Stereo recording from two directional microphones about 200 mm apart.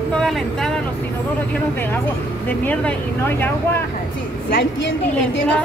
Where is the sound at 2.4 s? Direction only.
5° left (ahead or behind).